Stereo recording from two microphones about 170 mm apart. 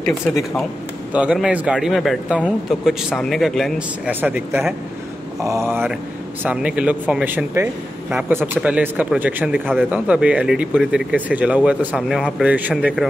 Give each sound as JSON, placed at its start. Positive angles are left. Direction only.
{"t": 1.1, "sound": "speech", "side_deg": -5}